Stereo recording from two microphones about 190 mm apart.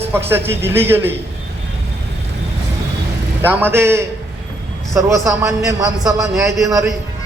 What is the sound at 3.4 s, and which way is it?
A man's voice, 10° right (ahead or behind).